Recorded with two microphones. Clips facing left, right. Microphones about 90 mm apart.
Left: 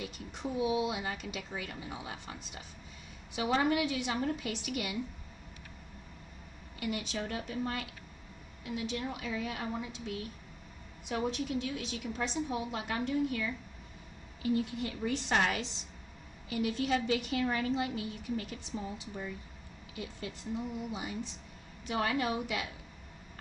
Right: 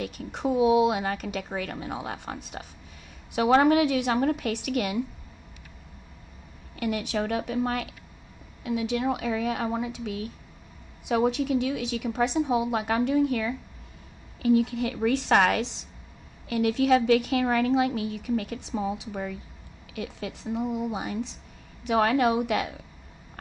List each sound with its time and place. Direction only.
0.0 s a woman's voice: 65° right (ahead or behind)
6.8 s a woman's voice: 60° right (ahead or behind)
8.6 s a woman's voice: 85° right
12.7 s a woman's voice: 75° right (ahead or behind)
16.4 s a woman's voice: 70° right (ahead or behind)
20.7 s a woman's voice: 65° right (ahead or behind)